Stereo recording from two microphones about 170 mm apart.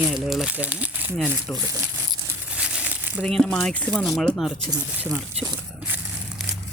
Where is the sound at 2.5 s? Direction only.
5° right (ahead or behind).